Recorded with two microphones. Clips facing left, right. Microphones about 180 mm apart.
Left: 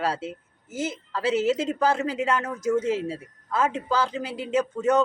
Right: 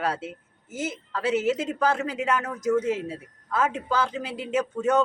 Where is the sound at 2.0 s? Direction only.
5° right (ahead or behind).